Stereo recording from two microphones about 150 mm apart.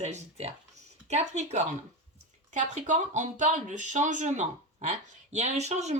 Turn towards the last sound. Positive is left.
turn(degrees=-50)  # may be behind; listen again after turning